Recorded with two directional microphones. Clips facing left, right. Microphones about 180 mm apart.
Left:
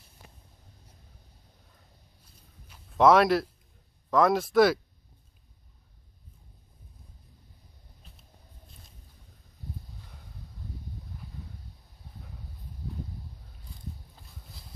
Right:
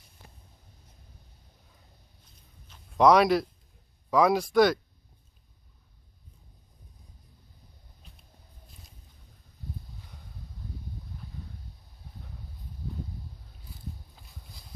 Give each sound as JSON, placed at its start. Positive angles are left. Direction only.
{"t": 2.7, "sound": "a man's voice", "side_deg": 0}